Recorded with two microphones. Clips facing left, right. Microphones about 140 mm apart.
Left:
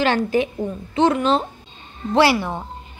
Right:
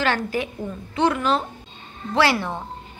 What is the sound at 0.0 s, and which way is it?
A woman's voice, 20° left (ahead or behind).